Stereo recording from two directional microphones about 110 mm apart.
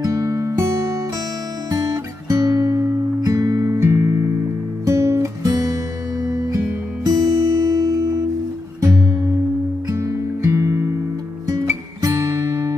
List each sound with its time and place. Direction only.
0.0 s music: 30° right (ahead or behind)
2.2 s music: 30° right (ahead or behind)
9.8 s music: 25° right (ahead or behind)